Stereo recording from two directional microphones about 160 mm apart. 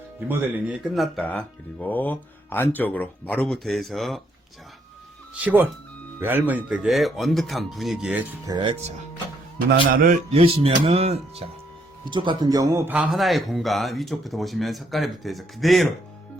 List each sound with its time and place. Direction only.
0.3 s speech: 10° right (ahead or behind)
0.9 s speech: centre (ahead or behind)
5.3 s speech: 10° right (ahead or behind)
8.4 s speech: 30° right (ahead or behind)
9.6 s a man's voice: 65° right (ahead or behind)
10.3 s speech: 35° right (ahead or behind); by 15.9 s centre (ahead or behind)